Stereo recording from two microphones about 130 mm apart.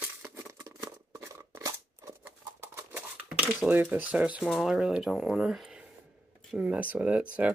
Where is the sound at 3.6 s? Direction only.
10° right (ahead or behind).